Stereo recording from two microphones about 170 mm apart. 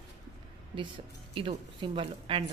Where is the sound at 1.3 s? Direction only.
30° right (ahead or behind).